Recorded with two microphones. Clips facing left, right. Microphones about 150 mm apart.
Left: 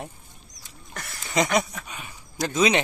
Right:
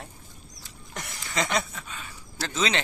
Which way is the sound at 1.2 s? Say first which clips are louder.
Left 5 dB; 20° left (ahead or behind).